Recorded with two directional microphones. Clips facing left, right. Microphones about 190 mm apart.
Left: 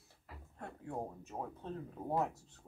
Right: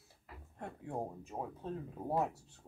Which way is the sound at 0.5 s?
15° right (ahead or behind).